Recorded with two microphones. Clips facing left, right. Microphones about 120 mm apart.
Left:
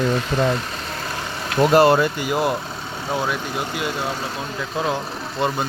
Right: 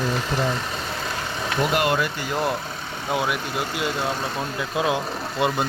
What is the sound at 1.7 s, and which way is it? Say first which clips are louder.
Speech: left 10 dB; 35° left (ahead or behind).